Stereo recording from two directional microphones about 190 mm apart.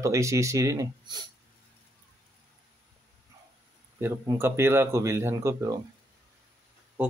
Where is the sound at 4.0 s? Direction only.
10° right (ahead or behind).